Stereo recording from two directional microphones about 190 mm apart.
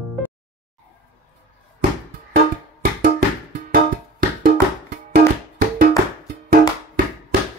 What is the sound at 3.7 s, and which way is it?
Music, 50° right (ahead or behind).